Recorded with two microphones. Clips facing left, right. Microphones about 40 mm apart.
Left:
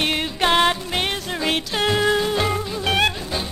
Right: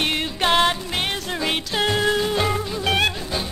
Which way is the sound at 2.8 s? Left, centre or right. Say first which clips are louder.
Left 1 dB; left.